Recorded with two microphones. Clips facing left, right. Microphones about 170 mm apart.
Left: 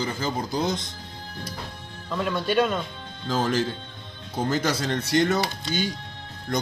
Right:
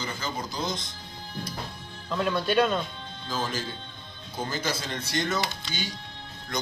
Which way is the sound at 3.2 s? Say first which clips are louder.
Left 7 dB; 70° left (ahead or behind).